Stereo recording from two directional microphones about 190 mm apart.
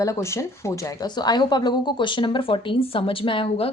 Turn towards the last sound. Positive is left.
turn(degrees=25)  # may be behind; listen again after turning